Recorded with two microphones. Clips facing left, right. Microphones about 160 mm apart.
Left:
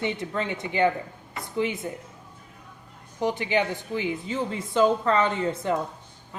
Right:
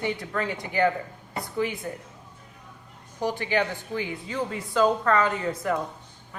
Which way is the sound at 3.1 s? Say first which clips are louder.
Left 1 dB; 20° left (ahead or behind).